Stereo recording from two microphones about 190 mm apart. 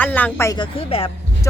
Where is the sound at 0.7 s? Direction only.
30° left (ahead or behind).